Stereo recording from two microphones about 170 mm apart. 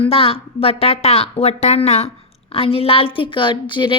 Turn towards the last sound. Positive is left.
turn(degrees=30)  # may be behind; listen again after turning